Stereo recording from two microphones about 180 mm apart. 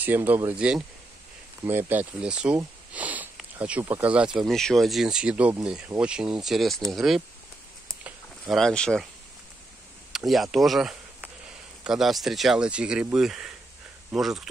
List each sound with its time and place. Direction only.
0.0 s speech: 10° right (ahead or behind)
8.0 s a sound: centre (ahead or behind)
10.1 s speech: centre (ahead or behind)